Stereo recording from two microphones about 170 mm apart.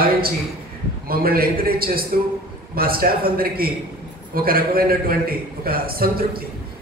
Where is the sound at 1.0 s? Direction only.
60° right (ahead or behind).